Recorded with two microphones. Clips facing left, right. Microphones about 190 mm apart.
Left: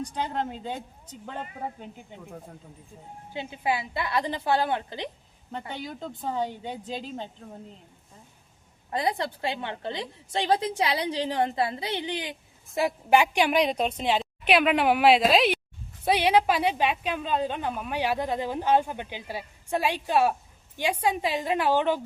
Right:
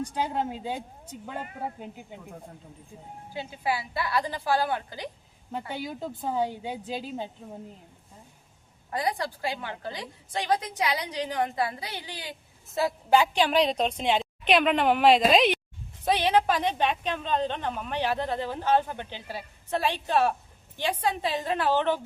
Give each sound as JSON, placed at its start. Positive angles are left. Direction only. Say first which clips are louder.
{"t": 0.1, "sound": "a woman's voice", "louder": "right 1 dB", "side_deg": -10}
{"t": 3.3, "sound": "a woman's voice", "louder": "left 2 dB", "side_deg": 20}
{"t": 5.5, "sound": "a woman's voice", "louder": "right 2 dB", "side_deg": -5}
{"t": 8.9, "sound": "a woman's voice", "louder": "left 2 dB", "side_deg": 25}